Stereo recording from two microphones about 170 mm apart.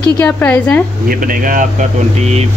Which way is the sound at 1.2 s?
55° right (ahead or behind).